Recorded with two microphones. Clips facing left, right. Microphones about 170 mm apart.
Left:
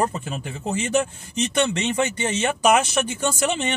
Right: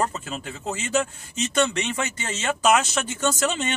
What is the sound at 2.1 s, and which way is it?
Speech, 15° left (ahead or behind).